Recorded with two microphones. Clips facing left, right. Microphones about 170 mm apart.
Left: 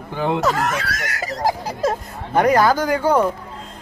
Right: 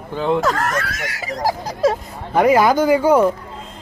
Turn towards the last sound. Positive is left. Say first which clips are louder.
# right 4 dB
turn(degrees=-10)  # may be behind; listen again after turning